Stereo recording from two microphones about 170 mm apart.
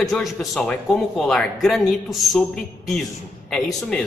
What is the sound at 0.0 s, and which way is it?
A man's voice, centre (ahead or behind).